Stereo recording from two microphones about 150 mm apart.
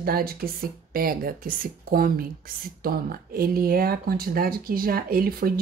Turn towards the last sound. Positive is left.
turn(degrees=-80)